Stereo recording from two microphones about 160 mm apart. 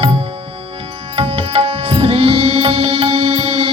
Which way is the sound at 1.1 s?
35° right (ahead or behind).